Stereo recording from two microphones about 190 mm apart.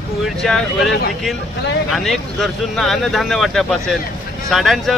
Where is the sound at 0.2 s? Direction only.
Centre (ahead or behind).